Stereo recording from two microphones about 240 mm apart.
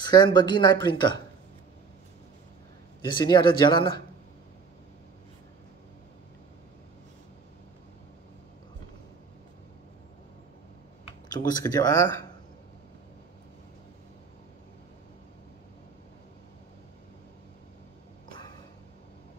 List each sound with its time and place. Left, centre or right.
0.0 s speech: centre
3.1 s speech: centre
11.2 s speech: centre